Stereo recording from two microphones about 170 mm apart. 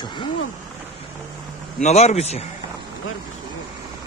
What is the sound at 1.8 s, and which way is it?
Speech, 40° left (ahead or behind).